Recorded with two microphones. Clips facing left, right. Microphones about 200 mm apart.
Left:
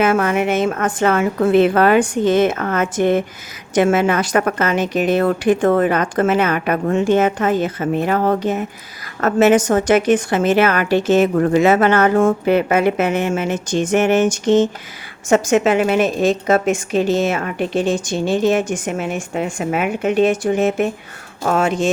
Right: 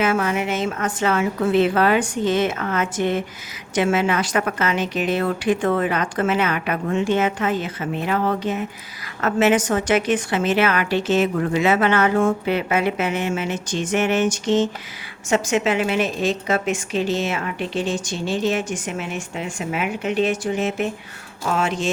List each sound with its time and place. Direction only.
0.0 s a woman's voice: 55° left (ahead or behind)